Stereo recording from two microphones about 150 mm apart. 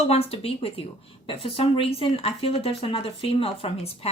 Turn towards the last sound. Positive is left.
turn(degrees=40)  # may be behind; listen again after turning